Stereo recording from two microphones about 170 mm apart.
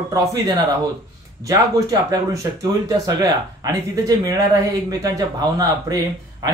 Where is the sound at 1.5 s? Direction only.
20° right (ahead or behind).